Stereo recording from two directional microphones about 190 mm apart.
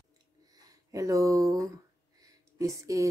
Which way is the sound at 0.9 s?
15° right (ahead or behind).